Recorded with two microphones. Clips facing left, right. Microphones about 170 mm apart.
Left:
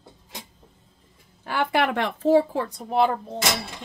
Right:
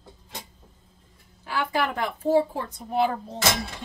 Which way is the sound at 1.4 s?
70° left (ahead or behind).